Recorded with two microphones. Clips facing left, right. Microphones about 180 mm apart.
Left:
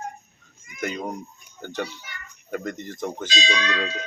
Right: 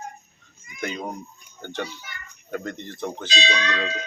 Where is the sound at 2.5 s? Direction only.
10° left (ahead or behind).